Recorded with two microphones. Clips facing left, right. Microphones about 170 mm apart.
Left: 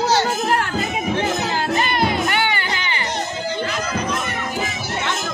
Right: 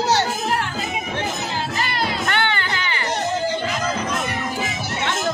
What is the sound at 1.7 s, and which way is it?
Music, 20° left (ahead or behind).